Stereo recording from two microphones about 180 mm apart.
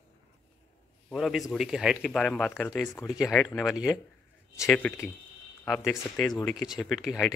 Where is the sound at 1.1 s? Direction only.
Centre (ahead or behind).